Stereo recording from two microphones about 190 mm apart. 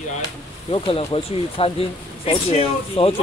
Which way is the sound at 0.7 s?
30° left (ahead or behind).